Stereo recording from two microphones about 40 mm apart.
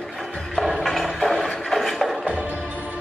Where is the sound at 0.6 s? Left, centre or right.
Centre.